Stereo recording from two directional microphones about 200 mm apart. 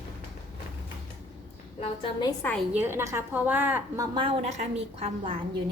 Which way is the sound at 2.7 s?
10° right (ahead or behind).